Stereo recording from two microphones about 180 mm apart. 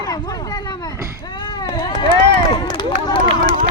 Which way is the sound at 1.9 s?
25° left (ahead or behind).